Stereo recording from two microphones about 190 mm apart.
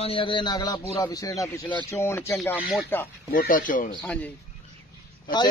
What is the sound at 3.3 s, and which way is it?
Speech, 45° left (ahead or behind).